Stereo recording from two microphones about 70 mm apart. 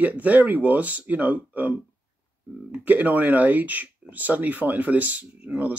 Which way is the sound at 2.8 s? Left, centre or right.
Right.